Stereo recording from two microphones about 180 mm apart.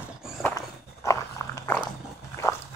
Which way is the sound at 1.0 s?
20° left (ahead or behind).